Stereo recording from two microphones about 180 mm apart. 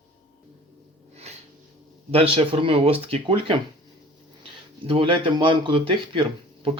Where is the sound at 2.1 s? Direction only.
35° right (ahead or behind).